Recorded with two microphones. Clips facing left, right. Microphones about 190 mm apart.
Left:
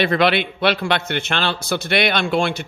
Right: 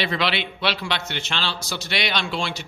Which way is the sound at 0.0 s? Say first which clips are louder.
Left 7 dB; 55° left (ahead or behind).